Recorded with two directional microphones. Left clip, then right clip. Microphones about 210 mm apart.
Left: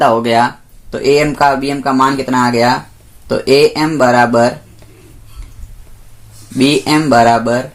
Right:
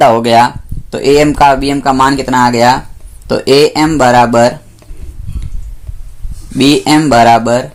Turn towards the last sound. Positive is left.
turn(degrees=-45)  # may be behind; listen again after turning